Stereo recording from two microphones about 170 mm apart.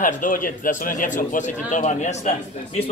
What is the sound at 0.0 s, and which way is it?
Speech, 50° left (ahead or behind).